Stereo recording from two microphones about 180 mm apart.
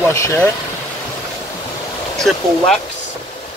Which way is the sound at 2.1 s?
Centre (ahead or behind).